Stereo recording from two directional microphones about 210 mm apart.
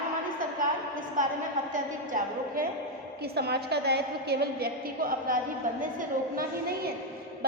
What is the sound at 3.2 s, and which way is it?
A woman's voice, 50° right (ahead or behind).